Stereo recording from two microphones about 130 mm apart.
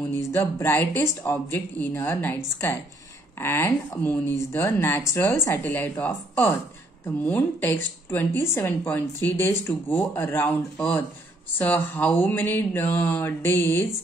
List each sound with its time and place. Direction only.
0.1 s a woman's voice: 20° left (ahead or behind)